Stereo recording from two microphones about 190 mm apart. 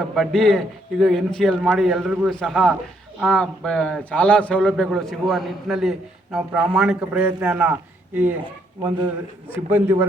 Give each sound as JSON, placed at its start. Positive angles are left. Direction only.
{"t": 0.1, "sound": "a man's voice", "side_deg": 0}
{"t": 9.6, "sound": "a man's voice", "side_deg": -10}